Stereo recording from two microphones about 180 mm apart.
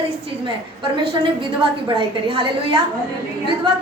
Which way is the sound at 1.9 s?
25° right (ahead or behind).